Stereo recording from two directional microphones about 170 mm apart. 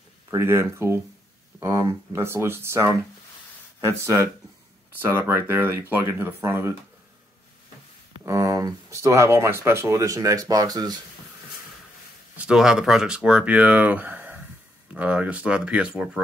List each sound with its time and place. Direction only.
0.3 s speech: 15° right (ahead or behind)
4.0 s speech: 15° right (ahead or behind)
8.3 s speech: 20° right (ahead or behind)
12.4 s speech: 5° right (ahead or behind)